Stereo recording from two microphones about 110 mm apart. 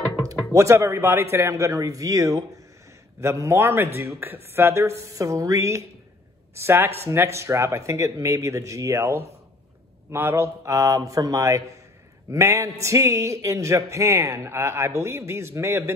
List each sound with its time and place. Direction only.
0.5 s speech: 25° right (ahead or behind)